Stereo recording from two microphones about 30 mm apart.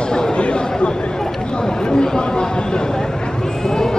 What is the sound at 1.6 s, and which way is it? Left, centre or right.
Chatter, left.